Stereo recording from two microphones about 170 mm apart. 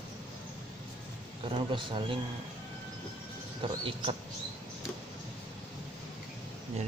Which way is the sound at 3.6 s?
30° right (ahead or behind).